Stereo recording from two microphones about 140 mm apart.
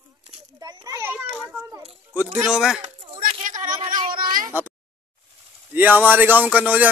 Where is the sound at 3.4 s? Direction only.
65° right (ahead or behind).